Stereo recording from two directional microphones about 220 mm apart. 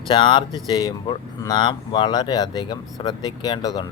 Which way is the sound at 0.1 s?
20° left (ahead or behind).